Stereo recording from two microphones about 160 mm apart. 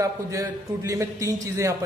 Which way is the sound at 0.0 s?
20° right (ahead or behind).